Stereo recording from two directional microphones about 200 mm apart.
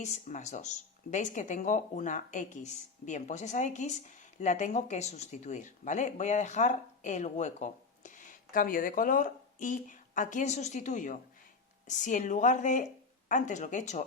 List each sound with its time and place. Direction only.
0.0 s speech: 35° left (ahead or behind)